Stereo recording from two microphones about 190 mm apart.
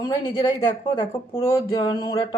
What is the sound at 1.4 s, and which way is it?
Mantra, 15° left (ahead or behind).